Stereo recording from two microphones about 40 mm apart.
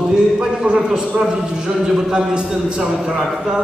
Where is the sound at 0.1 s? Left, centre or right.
Centre.